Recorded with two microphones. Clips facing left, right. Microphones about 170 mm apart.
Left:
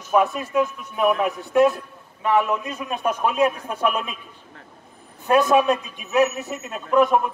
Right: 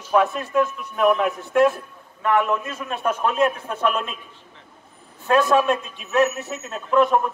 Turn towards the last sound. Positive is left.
turn(degrees=15)  # may be behind; listen again after turning